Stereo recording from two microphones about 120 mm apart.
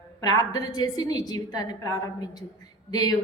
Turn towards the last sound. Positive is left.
turn(degrees=30)  # may be behind; listen again after turning